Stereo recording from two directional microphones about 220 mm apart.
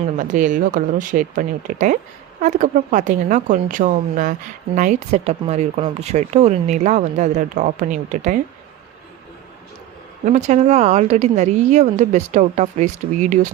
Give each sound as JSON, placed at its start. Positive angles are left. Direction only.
{"t": 0.2, "sound": "speech", "side_deg": -35}
{"t": 10.2, "sound": "speech", "side_deg": -30}